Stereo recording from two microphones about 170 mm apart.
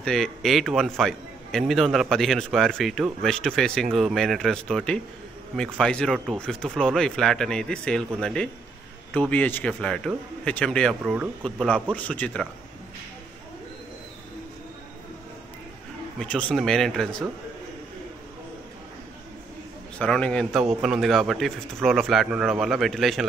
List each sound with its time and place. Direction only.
0.0 s a man's voice: centre (ahead or behind)
16.2 s a man's voice: 5° left (ahead or behind)
20.0 s a man's voice: 5° left (ahead or behind)